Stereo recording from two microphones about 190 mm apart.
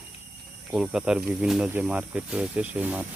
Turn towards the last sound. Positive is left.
turn(degrees=-10)  # may be behind; listen again after turning